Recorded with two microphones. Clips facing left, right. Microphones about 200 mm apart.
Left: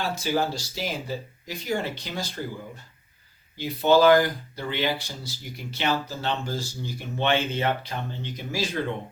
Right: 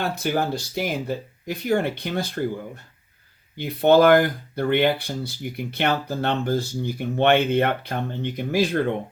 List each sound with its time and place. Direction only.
0.0 s speech: 60° right (ahead or behind)
3.6 s speech: 55° right (ahead or behind)